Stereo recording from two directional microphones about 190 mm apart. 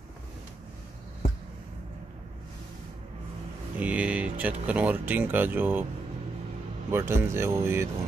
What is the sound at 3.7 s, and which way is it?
Speech, 5° right (ahead or behind).